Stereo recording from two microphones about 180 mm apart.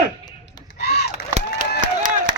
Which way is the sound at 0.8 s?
65° left (ahead or behind).